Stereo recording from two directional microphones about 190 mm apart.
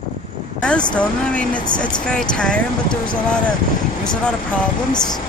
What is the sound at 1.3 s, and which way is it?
Speech, 5° left (ahead or behind).